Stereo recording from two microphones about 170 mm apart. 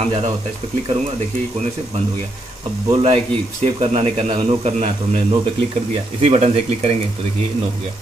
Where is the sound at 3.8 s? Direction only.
40° right (ahead or behind).